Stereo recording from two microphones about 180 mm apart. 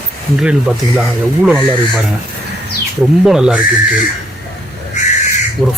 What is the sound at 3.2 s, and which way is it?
Speech, 5° right (ahead or behind).